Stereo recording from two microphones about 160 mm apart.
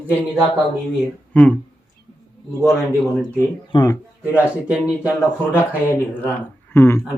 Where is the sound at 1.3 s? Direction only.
10° left (ahead or behind).